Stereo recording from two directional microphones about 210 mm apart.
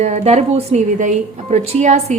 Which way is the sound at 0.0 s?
30° right (ahead or behind).